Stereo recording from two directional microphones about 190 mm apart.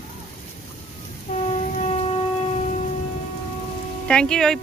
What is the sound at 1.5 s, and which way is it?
Rain, 35° left (ahead or behind).